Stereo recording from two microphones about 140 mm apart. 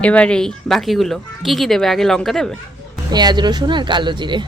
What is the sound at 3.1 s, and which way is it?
Speech, 30° right (ahead or behind).